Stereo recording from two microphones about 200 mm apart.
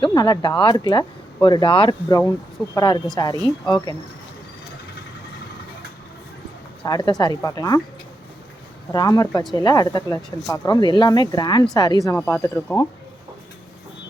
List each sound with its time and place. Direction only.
0.0 s speech: 20° left (ahead or behind)
6.8 s speech: 20° left (ahead or behind)
8.9 s speech: 20° left (ahead or behind)